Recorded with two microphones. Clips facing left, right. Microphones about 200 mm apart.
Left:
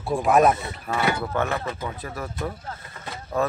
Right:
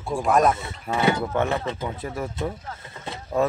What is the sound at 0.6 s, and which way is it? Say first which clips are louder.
A man's voice: right 2 dB; 20° right (ahead or behind).